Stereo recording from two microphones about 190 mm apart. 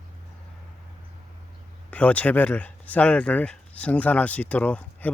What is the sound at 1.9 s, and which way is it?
Speech, 5° left (ahead or behind).